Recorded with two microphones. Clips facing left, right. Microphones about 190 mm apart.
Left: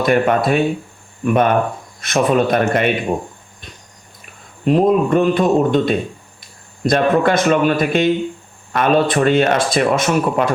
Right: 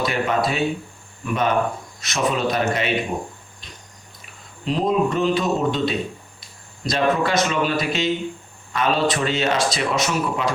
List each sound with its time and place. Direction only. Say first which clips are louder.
0.0 s speech: left 7 dB; 55° left (ahead or behind)
4.6 s speech: left 6 dB; 55° left (ahead or behind)